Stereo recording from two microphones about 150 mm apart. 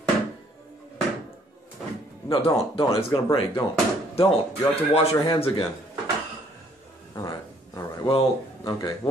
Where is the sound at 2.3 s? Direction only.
40° left (ahead or behind).